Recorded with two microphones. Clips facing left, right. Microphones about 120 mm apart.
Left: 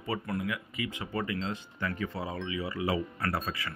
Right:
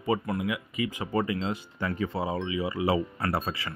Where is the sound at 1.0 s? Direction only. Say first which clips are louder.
Right 5 dB; 40° right (ahead or behind).